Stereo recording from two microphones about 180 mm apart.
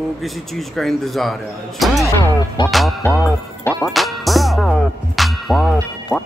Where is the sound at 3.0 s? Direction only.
10° left (ahead or behind).